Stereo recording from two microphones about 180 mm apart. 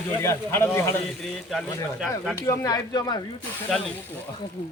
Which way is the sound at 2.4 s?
15° left (ahead or behind).